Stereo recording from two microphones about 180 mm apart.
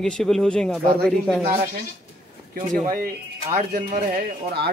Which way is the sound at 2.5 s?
45° right (ahead or behind).